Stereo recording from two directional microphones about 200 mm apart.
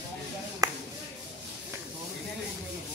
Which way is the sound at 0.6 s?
15° right (ahead or behind).